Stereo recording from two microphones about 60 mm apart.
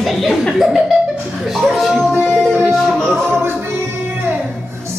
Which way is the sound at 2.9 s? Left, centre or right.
Centre.